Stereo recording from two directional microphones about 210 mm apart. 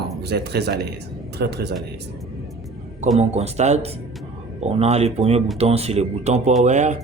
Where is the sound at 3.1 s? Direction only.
30° right (ahead or behind).